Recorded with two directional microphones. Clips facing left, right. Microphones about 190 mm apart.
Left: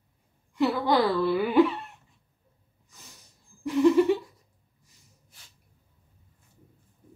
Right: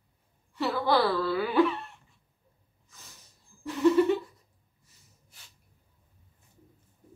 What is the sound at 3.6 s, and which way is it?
Speech, 10° left (ahead or behind).